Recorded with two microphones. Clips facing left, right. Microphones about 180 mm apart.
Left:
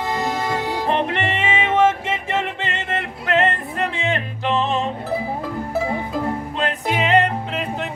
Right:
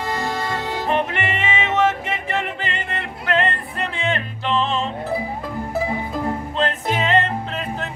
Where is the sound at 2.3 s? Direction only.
25° left (ahead or behind).